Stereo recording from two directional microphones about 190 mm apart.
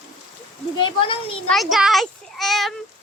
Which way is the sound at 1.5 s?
Centre (ahead or behind).